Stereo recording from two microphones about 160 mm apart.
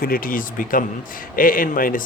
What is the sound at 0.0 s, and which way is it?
Speech, 65° left (ahead or behind).